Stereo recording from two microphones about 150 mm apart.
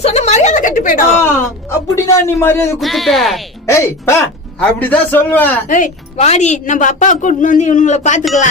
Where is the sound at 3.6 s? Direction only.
20° left (ahead or behind).